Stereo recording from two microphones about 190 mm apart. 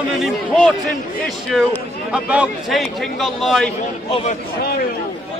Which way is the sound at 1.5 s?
Centre (ahead or behind).